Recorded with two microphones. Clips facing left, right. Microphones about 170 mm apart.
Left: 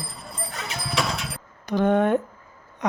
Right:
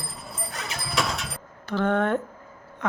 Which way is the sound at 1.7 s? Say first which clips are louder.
Left 3 dB; 15° left (ahead or behind).